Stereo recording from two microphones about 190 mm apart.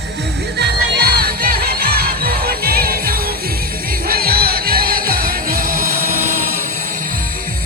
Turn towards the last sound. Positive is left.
turn(degrees=-45)  # may be behind; listen again after turning